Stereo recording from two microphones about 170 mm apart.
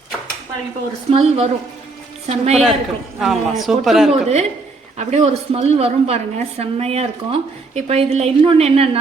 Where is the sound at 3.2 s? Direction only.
Centre (ahead or behind).